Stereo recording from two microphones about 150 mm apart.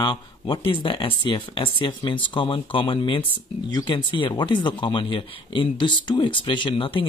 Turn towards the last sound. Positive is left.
turn(degrees=35)  # may be behind; listen again after turning